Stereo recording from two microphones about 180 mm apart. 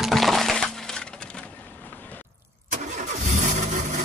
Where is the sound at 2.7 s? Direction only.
40° right (ahead or behind).